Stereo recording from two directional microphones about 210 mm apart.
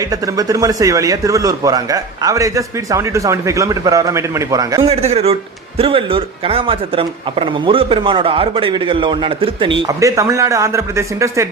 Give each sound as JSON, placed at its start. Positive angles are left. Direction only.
{"t": 0.0, "sound": "a man's voice", "side_deg": -15}
{"t": 4.9, "sound": "a man's voice", "side_deg": -30}